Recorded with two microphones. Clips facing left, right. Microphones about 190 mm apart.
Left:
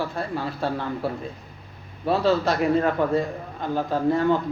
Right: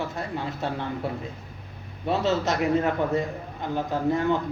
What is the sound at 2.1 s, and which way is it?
Speech, 20° right (ahead or behind).